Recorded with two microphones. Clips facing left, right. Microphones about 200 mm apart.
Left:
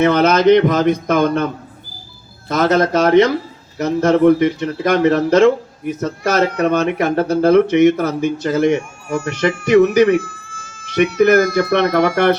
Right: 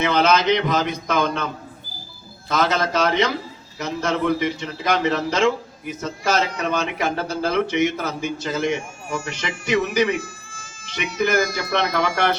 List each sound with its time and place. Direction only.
0.0 s speech: 55° left (ahead or behind)
2.5 s speech: 55° left (ahead or behind)